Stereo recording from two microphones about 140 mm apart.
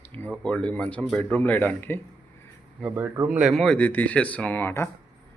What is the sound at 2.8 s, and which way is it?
Speech, 10° right (ahead or behind).